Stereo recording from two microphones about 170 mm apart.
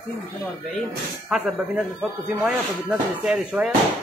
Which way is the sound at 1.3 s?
5° right (ahead or behind).